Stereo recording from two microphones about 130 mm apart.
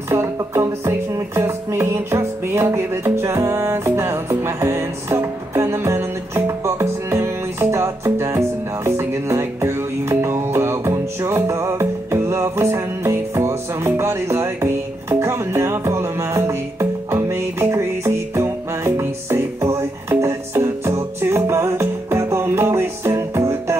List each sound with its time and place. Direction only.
0.1 s music: 20° right (ahead or behind)